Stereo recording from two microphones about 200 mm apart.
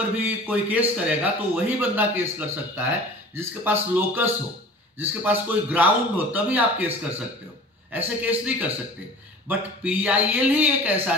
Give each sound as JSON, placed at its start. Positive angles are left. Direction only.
{"t": 0.1, "sound": "a man's voice", "side_deg": -10}